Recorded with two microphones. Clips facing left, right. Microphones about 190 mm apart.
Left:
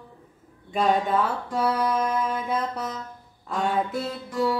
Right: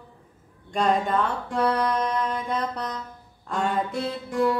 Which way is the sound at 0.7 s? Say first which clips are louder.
Left 1 dB; 5° left (ahead or behind).